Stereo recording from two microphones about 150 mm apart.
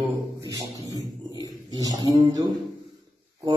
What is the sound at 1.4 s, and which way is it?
A man's voice, 25° right (ahead or behind).